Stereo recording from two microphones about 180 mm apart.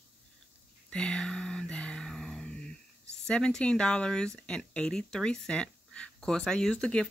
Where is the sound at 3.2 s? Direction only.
5° left (ahead or behind).